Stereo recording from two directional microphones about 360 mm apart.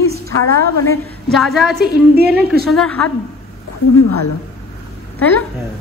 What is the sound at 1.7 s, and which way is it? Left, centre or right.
Speech, right.